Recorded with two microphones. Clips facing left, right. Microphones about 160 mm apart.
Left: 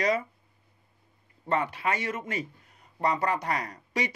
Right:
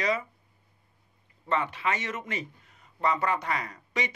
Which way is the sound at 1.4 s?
40° left (ahead or behind).